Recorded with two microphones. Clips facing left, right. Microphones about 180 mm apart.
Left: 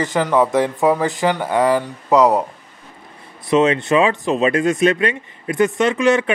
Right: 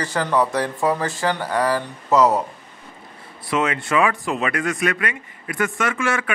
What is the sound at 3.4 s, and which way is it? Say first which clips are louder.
A man's voice: left 7 dB; 25° left (ahead or behind).